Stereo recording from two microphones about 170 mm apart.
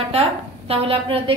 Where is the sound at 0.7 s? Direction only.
35° right (ahead or behind).